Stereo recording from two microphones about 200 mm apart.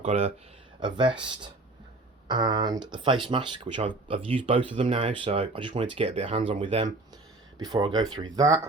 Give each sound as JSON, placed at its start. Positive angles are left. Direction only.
{"t": 0.0, "sound": "speech", "side_deg": -30}
{"t": 2.2, "sound": "speech", "side_deg": -20}